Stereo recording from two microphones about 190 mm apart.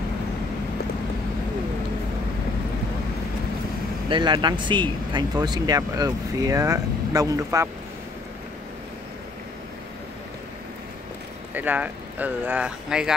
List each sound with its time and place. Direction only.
4.1 s speech: 25° right (ahead or behind)
11.5 s speech: 10° right (ahead or behind)